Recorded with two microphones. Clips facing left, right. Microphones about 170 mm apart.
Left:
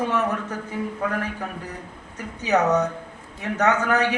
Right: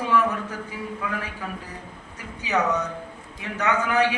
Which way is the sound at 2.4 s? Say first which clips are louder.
Left 4 dB; 45° left (ahead or behind).